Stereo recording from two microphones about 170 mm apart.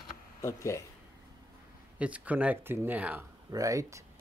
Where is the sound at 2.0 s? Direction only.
10° right (ahead or behind).